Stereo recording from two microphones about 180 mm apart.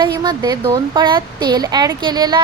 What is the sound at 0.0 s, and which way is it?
A woman's voice, 25° right (ahead or behind).